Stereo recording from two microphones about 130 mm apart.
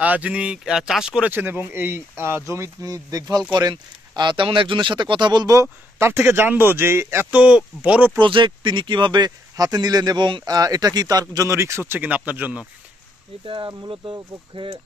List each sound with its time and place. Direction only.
0.0 s speech: 10° right (ahead or behind)
8.2 s speech: 40° right (ahead or behind); by 12.6 s 15° right (ahead or behind)
13.5 s speech: 35° right (ahead or behind)